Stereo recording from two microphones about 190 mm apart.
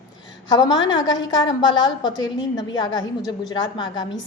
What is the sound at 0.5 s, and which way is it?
A woman's voice, 20° left (ahead or behind).